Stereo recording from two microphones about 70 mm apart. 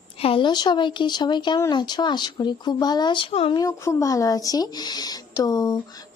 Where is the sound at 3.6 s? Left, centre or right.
Left.